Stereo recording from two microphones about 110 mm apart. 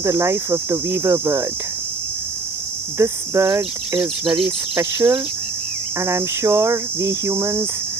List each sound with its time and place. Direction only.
0.0 s cricket: 30° right (ahead or behind)
3.0 s cricket: 30° right (ahead or behind)